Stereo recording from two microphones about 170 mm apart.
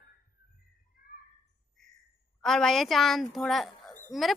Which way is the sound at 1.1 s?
55° left (ahead or behind).